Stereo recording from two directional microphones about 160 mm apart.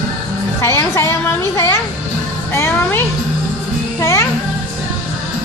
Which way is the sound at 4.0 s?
15° left (ahead or behind).